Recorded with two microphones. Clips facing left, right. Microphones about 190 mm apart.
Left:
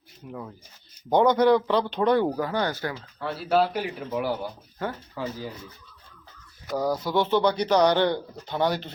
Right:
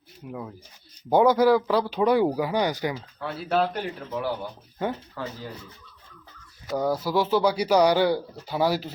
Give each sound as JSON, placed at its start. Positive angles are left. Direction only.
{"t": 0.3, "sound": "speech", "side_deg": -5}
{"t": 3.5, "sound": "speech", "side_deg": 5}
{"t": 6.7, "sound": "speech", "side_deg": 0}